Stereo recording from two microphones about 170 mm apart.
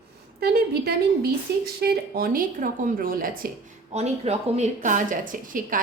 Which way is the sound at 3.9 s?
40° right (ahead or behind).